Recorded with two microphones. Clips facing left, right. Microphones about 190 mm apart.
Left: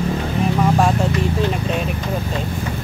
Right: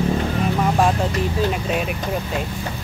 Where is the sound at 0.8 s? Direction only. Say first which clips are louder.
Left 1 dB; centre (ahead or behind).